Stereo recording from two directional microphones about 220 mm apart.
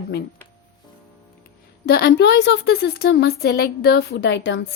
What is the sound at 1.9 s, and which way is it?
A woman's voice, 45° left (ahead or behind).